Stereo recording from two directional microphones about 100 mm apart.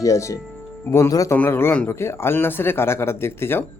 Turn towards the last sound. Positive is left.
turn(degrees=25)  # may be behind; listen again after turning